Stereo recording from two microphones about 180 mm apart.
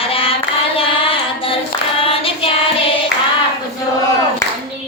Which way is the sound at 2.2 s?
30° left (ahead or behind).